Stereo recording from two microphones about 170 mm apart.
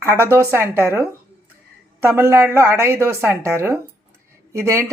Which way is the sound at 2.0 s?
15° right (ahead or behind).